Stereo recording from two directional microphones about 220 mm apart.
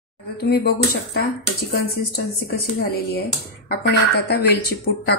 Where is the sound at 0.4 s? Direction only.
45° left (ahead or behind).